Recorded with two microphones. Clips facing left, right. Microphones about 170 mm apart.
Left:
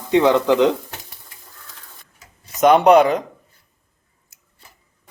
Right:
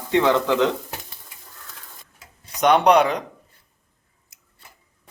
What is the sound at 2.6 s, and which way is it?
Speech, centre (ahead or behind).